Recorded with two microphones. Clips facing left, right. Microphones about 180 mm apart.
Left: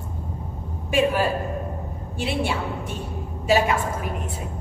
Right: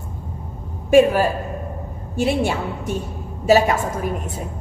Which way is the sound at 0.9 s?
45° right (ahead or behind).